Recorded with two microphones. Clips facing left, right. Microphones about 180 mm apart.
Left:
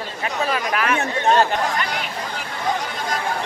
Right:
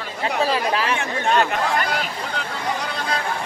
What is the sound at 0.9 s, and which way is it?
Speech, 35° left (ahead or behind).